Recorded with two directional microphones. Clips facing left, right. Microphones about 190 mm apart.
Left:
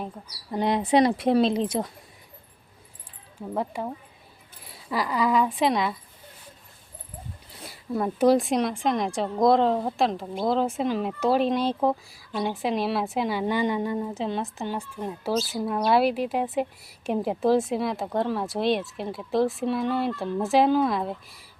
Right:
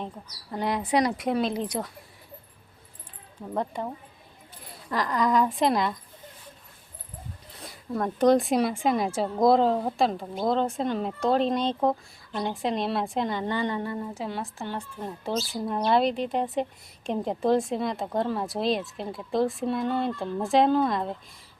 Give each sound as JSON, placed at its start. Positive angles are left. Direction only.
{"t": 0.5, "sound": "speech", "side_deg": 20}
{"t": 3.5, "sound": "a woman's voice", "side_deg": 5}
{"t": 7.6, "sound": "a woman's voice", "side_deg": 5}
{"t": 15.0, "sound": "a woman's voice", "side_deg": 5}